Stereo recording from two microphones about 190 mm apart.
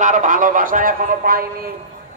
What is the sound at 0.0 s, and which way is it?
Speech, 40° right (ahead or behind).